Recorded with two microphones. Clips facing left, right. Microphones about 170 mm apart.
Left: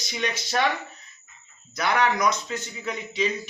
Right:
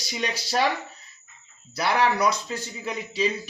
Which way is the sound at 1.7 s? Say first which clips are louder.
Even; 30° right (ahead or behind).